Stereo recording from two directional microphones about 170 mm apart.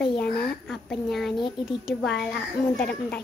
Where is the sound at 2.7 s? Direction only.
5° left (ahead or behind).